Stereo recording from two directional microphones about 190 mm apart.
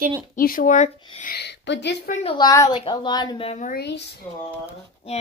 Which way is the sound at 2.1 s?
30° left (ahead or behind).